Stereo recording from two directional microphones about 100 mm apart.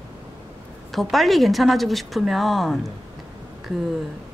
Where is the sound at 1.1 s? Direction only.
Centre (ahead or behind).